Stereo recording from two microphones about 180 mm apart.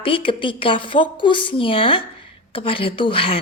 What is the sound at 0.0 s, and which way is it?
A woman's voice, 30° left (ahead or behind).